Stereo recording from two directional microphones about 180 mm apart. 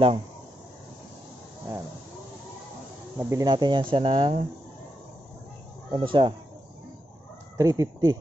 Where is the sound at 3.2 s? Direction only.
20° right (ahead or behind).